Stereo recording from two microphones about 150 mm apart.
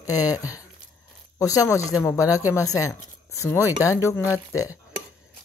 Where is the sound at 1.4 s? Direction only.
20° left (ahead or behind).